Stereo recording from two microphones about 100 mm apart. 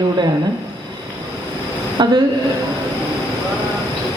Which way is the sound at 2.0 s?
50° right (ahead or behind).